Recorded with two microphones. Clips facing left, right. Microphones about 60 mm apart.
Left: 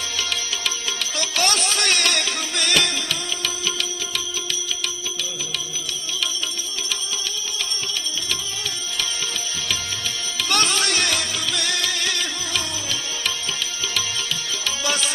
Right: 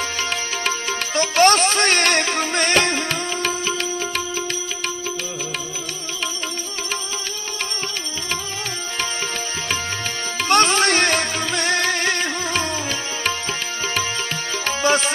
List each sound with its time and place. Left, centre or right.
0.2 s music: right
10.3 s music: right
14.6 s music: right